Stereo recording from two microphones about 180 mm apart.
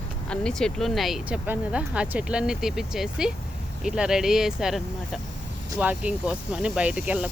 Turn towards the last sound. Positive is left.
turn(degrees=-5)  # may be behind; listen again after turning